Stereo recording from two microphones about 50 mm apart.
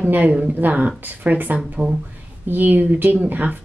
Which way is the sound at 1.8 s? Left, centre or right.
Centre.